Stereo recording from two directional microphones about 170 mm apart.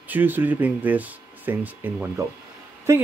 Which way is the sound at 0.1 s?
10° right (ahead or behind).